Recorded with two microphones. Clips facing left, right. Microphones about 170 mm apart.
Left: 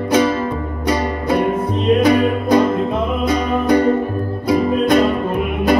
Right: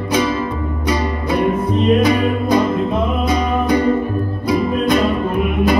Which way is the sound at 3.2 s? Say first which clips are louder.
Left 4 dB; 60° left (ahead or behind).